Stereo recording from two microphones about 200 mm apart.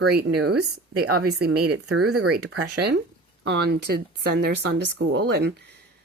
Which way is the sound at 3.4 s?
60° right (ahead or behind).